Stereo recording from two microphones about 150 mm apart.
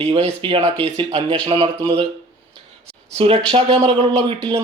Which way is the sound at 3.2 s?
35° right (ahead or behind).